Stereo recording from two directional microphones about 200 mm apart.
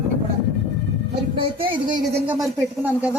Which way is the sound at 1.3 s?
25° right (ahead or behind).